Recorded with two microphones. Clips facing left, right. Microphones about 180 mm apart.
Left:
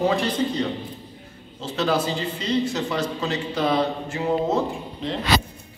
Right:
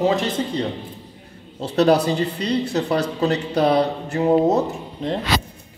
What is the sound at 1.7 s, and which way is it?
Speech, 65° right (ahead or behind).